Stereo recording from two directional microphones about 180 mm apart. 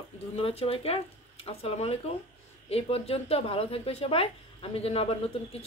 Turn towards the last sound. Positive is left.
turn(degrees=30)  # may be behind; listen again after turning